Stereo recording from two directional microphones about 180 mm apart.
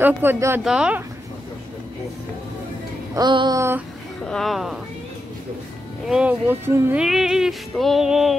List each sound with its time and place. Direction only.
0.0 s speech: 10° right (ahead or behind)
3.2 s a sound: 25° right (ahead or behind)
4.3 s speech: centre (ahead or behind)
6.0 s speech: 5° right (ahead or behind)